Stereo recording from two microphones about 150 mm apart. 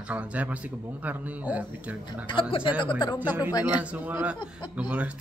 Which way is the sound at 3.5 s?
25° left (ahead or behind).